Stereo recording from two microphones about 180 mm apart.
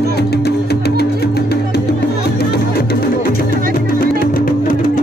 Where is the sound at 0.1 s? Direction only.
65° left (ahead or behind).